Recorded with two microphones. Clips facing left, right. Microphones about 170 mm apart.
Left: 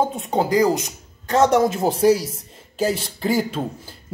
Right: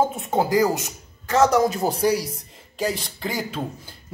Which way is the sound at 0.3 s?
15° left (ahead or behind).